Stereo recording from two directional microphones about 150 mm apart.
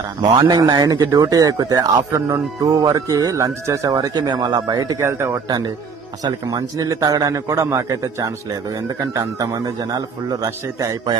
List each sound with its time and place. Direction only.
0.2 s a man's voice: 30° right (ahead or behind)